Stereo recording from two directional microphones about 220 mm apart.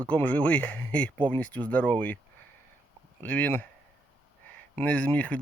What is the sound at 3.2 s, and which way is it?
Speech, 5° left (ahead or behind).